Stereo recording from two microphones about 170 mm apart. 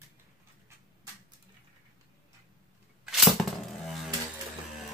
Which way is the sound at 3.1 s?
Centre (ahead or behind).